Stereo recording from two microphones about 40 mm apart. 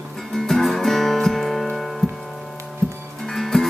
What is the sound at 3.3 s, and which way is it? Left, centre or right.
Music, centre.